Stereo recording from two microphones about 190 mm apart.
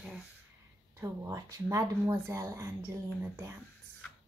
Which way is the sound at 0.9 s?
15° right (ahead or behind).